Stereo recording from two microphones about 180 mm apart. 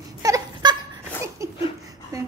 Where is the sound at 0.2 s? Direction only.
20° right (ahead or behind).